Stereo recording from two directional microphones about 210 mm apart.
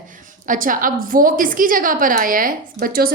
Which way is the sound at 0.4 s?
40° right (ahead or behind).